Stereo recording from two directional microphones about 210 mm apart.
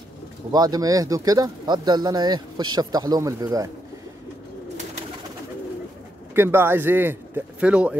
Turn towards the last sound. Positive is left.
turn(degrees=-5)  # may be behind; listen again after turning